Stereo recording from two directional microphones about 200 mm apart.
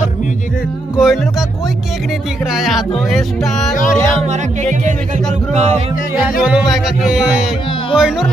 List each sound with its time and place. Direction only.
0.9 s music: centre (ahead or behind)
2.5 s music: centre (ahead or behind)
5.5 s speech: 35° right (ahead or behind)
6.4 s music: centre (ahead or behind)